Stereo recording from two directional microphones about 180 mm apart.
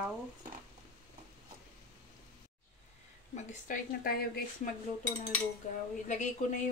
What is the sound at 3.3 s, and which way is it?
A woman's voice, 45° left (ahead or behind).